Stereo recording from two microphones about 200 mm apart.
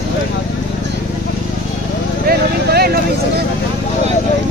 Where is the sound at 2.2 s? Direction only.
50° right (ahead or behind).